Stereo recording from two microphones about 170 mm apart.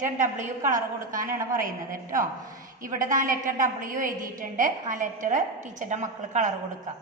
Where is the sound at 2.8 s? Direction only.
50° right (ahead or behind).